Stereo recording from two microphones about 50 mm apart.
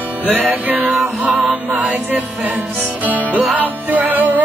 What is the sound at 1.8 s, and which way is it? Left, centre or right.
Music, right.